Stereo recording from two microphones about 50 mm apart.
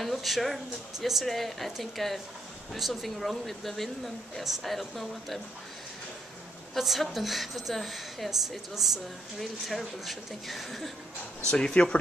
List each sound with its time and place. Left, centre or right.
0.0 s a woman's voice: centre
6.7 s a woman's voice: centre
11.5 s speech: centre